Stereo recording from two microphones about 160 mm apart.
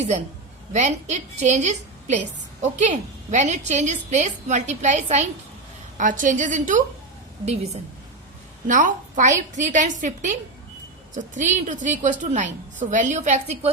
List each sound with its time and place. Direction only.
0.7 s a woman's voice: 45° right (ahead or behind)
8.6 s a woman's voice: 55° right (ahead or behind)